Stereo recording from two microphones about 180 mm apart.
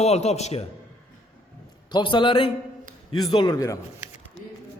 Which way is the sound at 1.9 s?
25° left (ahead or behind).